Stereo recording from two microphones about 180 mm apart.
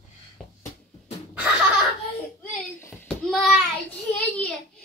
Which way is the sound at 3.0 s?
Centre (ahead or behind).